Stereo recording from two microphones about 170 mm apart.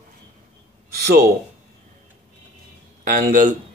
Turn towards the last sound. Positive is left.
turn(degrees=-50)  # may be behind; listen again after turning